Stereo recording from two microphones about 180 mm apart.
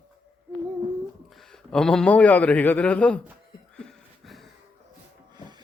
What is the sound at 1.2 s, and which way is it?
A man's voice, centre (ahead or behind).